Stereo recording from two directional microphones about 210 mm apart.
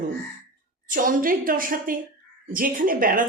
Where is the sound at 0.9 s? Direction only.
40° right (ahead or behind).